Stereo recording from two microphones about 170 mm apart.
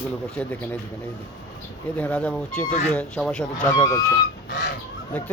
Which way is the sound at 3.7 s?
20° left (ahead or behind).